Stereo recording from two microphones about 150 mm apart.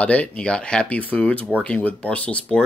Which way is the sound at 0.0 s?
10° left (ahead or behind).